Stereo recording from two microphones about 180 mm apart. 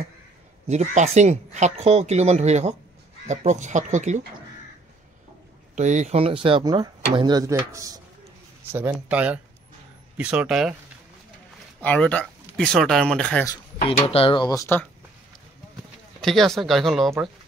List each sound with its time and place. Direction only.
0.7 s speech: 40° right (ahead or behind)
5.8 s speech: 40° right (ahead or behind); by 8.0 s 20° right (ahead or behind)
8.7 s speech: 10° right (ahead or behind)
11.8 s speech: 10° left (ahead or behind)
13.8 s speech: 30° left (ahead or behind); by 14.9 s 15° left (ahead or behind)
16.2 s speech: centre (ahead or behind)